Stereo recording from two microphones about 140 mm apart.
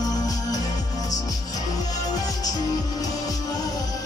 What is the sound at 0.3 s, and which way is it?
Music, 25° left (ahead or behind).